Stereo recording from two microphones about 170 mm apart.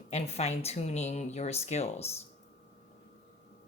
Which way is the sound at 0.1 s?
40° left (ahead or behind).